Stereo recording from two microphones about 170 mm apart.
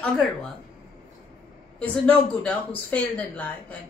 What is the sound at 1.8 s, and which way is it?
Speech, 10° left (ahead or behind).